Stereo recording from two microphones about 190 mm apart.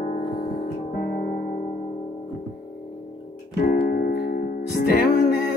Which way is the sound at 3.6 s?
50° left (ahead or behind).